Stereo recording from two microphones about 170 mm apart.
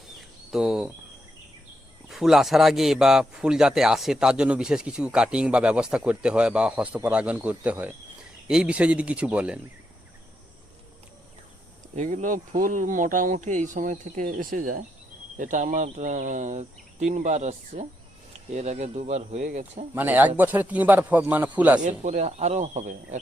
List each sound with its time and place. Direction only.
0.2 s a sound: 5° right (ahead or behind)
2.0 s a man's voice: centre (ahead or behind)
11.9 s speech: 50° right (ahead or behind)
19.9 s speech: 10° right (ahead or behind)
21.8 s speech: 45° right (ahead or behind)